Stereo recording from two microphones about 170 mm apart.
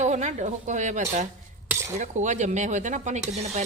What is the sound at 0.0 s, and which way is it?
Speech, 45° right (ahead or behind).